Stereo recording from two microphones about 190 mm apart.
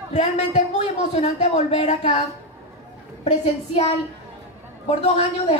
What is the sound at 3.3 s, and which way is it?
Speech, 35° left (ahead or behind).